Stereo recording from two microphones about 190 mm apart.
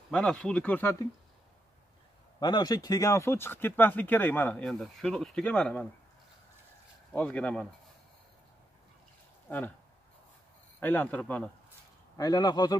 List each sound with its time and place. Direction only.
0.1 s speech: 5° left (ahead or behind)
2.4 s speech: 20° left (ahead or behind)
7.1 s speech: 5° left (ahead or behind)
10.8 s speech: 10° left (ahead or behind)
12.2 s a man's voice: 20° left (ahead or behind)